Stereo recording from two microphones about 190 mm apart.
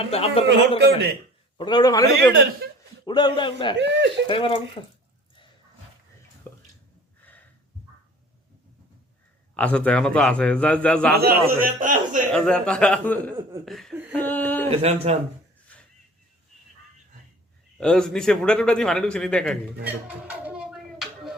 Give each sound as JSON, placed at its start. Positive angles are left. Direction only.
{"t": 0.1, "sound": "a man's voice", "side_deg": 30}
{"t": 3.8, "sound": "speech", "side_deg": -70}
{"t": 4.3, "sound": "a man's voice", "side_deg": 30}
{"t": 6.5, "sound": "a sound", "side_deg": 10}
{"t": 9.6, "sound": "a man's voice", "side_deg": 5}
{"t": 11.1, "sound": "a man's voice", "side_deg": -55}
{"t": 11.6, "sound": "a man's voice", "side_deg": -45}
{"t": 12.3, "sound": "a man's voice", "side_deg": 5}
{"t": 14.7, "sound": "speech", "side_deg": -30}
{"t": 17.7, "sound": "a man's voice", "side_deg": 5}
{"t": 20.1, "sound": "music", "side_deg": -5}